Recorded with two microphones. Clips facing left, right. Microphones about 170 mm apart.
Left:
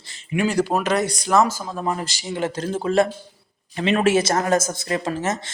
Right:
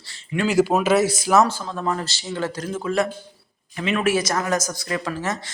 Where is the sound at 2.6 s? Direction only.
30° left (ahead or behind).